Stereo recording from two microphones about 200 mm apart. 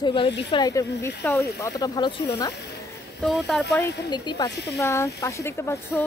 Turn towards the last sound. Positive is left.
turn(degrees=15)  # may be behind; listen again after turning